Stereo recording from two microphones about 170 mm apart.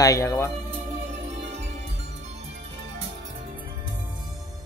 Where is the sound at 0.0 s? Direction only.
20° left (ahead or behind).